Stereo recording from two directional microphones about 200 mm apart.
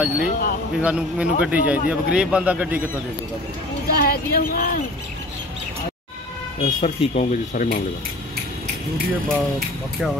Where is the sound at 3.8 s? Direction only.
50° left (ahead or behind).